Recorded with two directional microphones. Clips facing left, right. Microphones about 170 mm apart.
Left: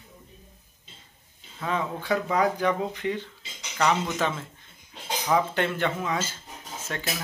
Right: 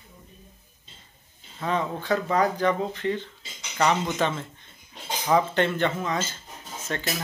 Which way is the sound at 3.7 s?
Centre (ahead or behind).